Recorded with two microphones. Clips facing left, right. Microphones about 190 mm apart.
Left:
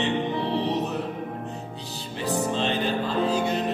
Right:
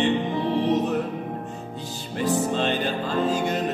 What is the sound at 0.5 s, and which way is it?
Music, 50° right (ahead or behind).